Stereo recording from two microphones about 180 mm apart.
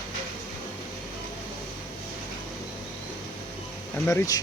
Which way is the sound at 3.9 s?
15° left (ahead or behind).